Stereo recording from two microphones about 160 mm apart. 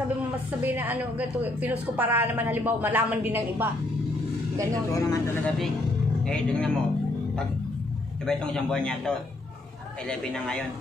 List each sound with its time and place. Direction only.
0.5 s a woman's voice: 10° right (ahead or behind)
4.9 s speech: 15° left (ahead or behind)
6.2 s a man's voice: 5° left (ahead or behind)
8.3 s a man's voice: 5° left (ahead or behind)